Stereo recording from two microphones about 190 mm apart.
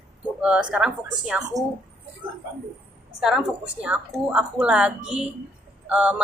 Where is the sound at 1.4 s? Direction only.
20° right (ahead or behind).